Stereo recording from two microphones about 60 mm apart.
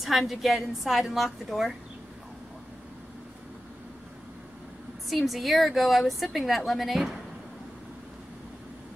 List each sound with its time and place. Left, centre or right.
0.0 s a woman's voice: centre
5.1 s a woman's voice: centre